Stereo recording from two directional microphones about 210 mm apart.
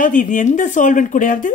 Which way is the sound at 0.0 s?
40° left (ahead or behind).